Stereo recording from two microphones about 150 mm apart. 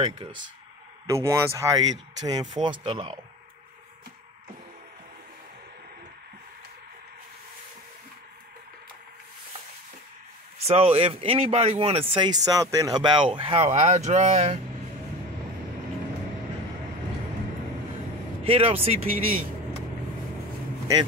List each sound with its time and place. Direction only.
1.0 s speech: 20° right (ahead or behind); by 3.2 s 40° right (ahead or behind)
10.6 s speech: 40° right (ahead or behind)
12.4 s speech: 25° right (ahead or behind); by 14.6 s 45° right (ahead or behind)
18.4 s speech: 40° right (ahead or behind)